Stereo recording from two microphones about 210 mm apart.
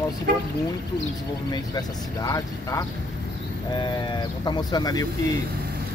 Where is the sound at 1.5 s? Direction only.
15° left (ahead or behind).